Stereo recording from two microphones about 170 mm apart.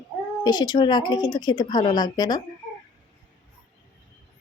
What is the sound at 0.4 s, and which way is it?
Speech, 25° left (ahead or behind).